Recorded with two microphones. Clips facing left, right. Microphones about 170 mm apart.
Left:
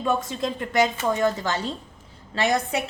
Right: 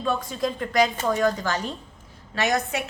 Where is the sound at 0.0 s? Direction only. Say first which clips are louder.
Left 1 dB; 25° left (ahead or behind).